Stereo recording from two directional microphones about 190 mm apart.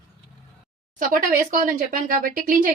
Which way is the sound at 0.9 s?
45° right (ahead or behind).